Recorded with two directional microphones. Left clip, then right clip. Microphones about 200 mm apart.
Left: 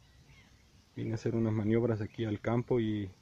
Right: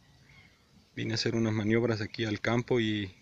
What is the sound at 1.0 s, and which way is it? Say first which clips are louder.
Speech: right 4 dB; 10° right (ahead or behind).